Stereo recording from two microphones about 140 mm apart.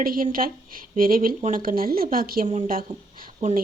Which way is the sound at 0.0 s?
80° right.